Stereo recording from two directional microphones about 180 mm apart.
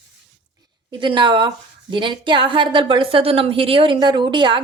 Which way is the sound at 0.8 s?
25° right (ahead or behind).